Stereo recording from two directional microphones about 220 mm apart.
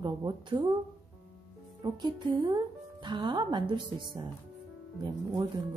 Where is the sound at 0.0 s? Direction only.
20° right (ahead or behind).